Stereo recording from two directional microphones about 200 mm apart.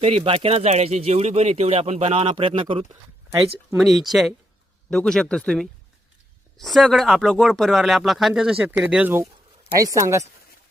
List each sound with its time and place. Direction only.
0.0 s speech: 30° right (ahead or behind)
3.8 s speech: centre (ahead or behind)